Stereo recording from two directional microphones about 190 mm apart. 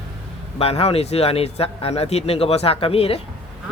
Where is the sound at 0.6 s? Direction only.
30° left (ahead or behind).